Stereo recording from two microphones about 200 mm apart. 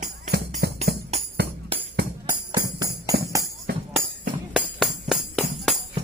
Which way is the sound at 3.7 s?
50° right (ahead or behind).